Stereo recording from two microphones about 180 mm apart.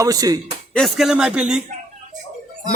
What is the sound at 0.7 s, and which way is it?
Speech, centre (ahead or behind).